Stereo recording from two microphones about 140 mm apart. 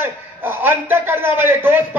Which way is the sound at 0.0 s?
15° right (ahead or behind).